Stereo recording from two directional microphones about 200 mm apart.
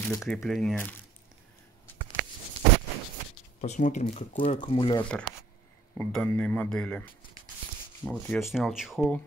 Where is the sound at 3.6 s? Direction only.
35° left (ahead or behind).